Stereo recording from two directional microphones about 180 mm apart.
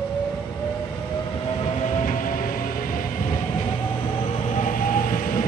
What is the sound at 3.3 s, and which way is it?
Train, 25° left (ahead or behind).